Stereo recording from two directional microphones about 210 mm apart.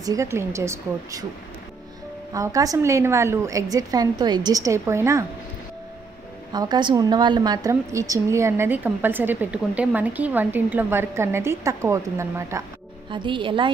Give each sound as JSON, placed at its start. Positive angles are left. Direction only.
{"t": 0.0, "sound": "a woman's voice", "side_deg": -15}
{"t": 2.3, "sound": "a woman's voice", "side_deg": -15}
{"t": 6.5, "sound": "a woman's voice", "side_deg": -20}